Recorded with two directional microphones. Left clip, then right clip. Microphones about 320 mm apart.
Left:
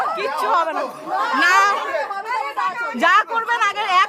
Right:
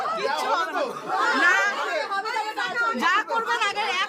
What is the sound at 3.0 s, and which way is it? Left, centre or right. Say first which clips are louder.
Speech: left 11 dB; centre.